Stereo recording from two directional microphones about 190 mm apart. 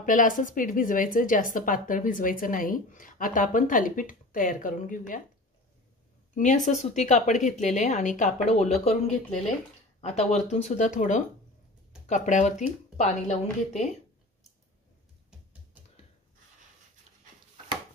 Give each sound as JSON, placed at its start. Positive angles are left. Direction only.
{"t": 0.0, "sound": "a woman's voice", "side_deg": 45}
{"t": 6.3, "sound": "speech", "side_deg": 40}
{"t": 9.9, "sound": "speech", "side_deg": 35}